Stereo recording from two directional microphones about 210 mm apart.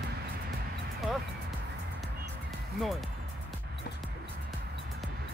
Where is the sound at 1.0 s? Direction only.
Centre (ahead or behind).